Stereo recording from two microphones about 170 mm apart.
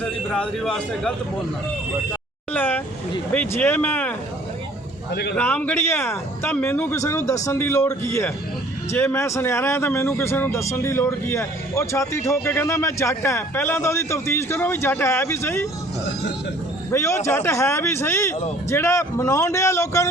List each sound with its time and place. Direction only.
0.0 s a man's voice: 5° left (ahead or behind)
2.5 s vehicle: 10° left (ahead or behind)
3.3 s a man's voice: 10° left (ahead or behind)
5.4 s a man's voice: 10° left (ahead or behind)
16.9 s a man's voice: 15° left (ahead or behind)